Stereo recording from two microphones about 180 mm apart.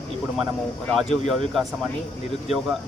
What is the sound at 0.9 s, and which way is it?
Speech, centre (ahead or behind).